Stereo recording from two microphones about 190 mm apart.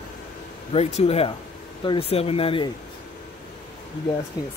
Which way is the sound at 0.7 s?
35° left (ahead or behind).